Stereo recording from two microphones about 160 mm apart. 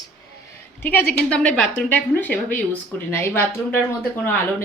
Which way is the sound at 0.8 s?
10° left (ahead or behind).